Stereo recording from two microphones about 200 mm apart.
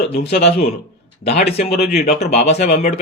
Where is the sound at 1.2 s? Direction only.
30° left (ahead or behind).